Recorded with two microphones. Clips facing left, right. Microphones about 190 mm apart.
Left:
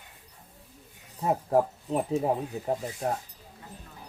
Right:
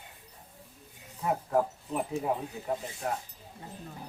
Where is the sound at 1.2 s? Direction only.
35° left (ahead or behind).